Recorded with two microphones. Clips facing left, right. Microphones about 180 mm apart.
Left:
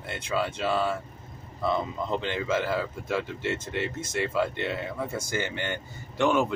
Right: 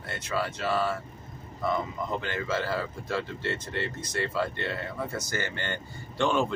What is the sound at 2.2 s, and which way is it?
Speech, 20° left (ahead or behind).